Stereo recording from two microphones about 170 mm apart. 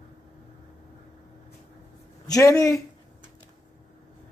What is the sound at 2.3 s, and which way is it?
Speech, 20° left (ahead or behind).